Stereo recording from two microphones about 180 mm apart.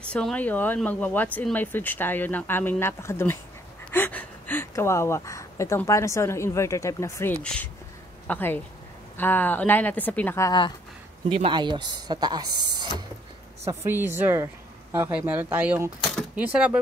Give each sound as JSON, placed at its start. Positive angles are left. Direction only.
{"t": 0.0, "sound": "speech", "side_deg": 5}
{"t": 11.2, "sound": "speech", "side_deg": -30}
{"t": 13.7, "sound": "speech", "side_deg": -10}